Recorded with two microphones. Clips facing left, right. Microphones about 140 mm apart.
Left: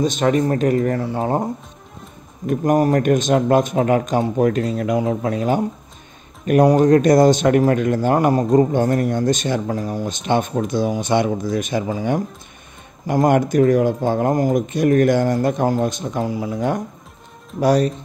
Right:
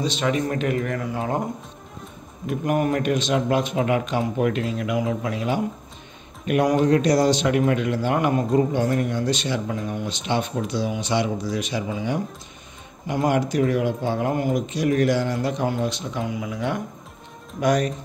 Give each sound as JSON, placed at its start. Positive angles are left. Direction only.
{"t": 0.0, "sound": "speech", "side_deg": 45}
{"t": 2.4, "sound": "speech", "side_deg": 45}